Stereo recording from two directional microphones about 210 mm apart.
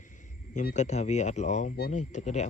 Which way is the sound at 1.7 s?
50° left (ahead or behind).